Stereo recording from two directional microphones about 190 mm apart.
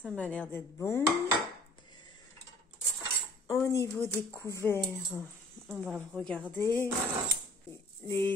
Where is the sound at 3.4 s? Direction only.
15° left (ahead or behind).